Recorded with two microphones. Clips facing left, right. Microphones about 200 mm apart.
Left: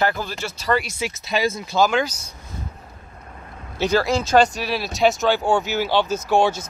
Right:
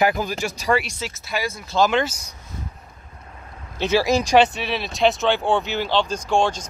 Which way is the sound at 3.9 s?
15° right (ahead or behind).